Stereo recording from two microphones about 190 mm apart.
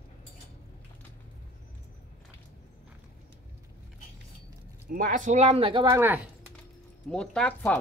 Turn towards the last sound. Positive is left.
turn(degrees=10)  # may be behind; listen again after turning